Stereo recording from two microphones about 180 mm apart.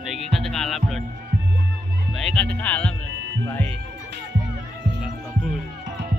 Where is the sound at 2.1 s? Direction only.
5° left (ahead or behind).